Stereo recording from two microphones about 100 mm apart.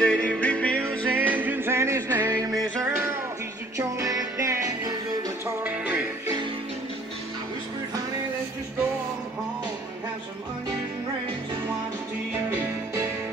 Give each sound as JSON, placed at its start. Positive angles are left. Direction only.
{"t": 0.0, "sound": "music", "side_deg": 10}
{"t": 1.1, "sound": "music", "side_deg": -20}
{"t": 5.4, "sound": "music", "side_deg": -15}